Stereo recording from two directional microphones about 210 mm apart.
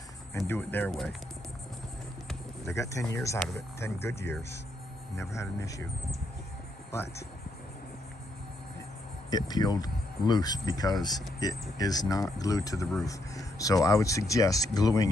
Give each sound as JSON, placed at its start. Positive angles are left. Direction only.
{"t": 0.4, "sound": "speech", "side_deg": 10}
{"t": 2.6, "sound": "speech", "side_deg": 15}
{"t": 3.3, "sound": "speech", "side_deg": 5}
{"t": 6.9, "sound": "speech", "side_deg": 10}
{"t": 9.3, "sound": "speech", "side_deg": 20}